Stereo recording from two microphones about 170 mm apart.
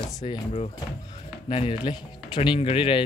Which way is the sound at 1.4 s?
30° left (ahead or behind).